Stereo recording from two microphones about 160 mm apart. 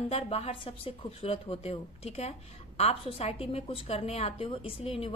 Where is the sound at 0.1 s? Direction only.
40° left (ahead or behind).